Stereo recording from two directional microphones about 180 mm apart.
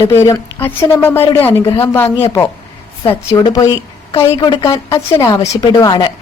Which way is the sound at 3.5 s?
20° left (ahead or behind).